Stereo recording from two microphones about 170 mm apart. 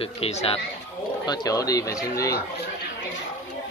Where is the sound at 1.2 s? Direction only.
20° left (ahead or behind).